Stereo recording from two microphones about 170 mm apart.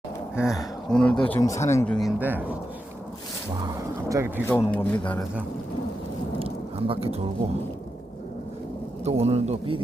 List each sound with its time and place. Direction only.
0.3 s speech: centre (ahead or behind)
1.4 s speech: 20° left (ahead or behind)
1.9 s speech: centre (ahead or behind)
2.2 s speech: 10° right (ahead or behind)
4.1 s speech: 15° right (ahead or behind)
4.4 s speech: 10° left (ahead or behind)
6.4 s a sound: 35° right (ahead or behind)
9.0 s speech: 35° right (ahead or behind)